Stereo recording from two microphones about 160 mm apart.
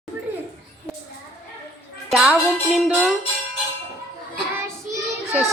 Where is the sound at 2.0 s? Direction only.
Centre (ahead or behind).